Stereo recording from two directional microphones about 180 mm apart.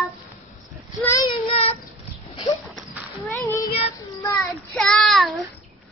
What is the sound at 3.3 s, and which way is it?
Speech, 10° left (ahead or behind).